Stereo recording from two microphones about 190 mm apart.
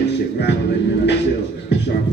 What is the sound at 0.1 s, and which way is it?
Music, 65° left (ahead or behind).